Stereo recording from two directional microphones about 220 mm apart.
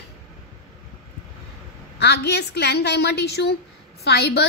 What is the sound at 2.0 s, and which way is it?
Speech, 50° left (ahead or behind).